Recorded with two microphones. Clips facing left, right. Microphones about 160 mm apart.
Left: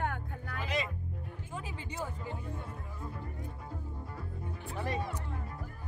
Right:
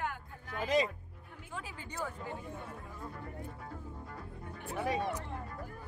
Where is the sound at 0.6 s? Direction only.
40° right (ahead or behind).